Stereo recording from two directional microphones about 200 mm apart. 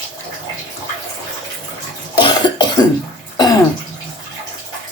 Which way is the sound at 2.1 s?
20° left (ahead or behind).